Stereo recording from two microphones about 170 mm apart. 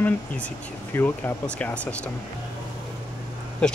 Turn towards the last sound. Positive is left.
turn(degrees=5)  # may be behind; listen again after turning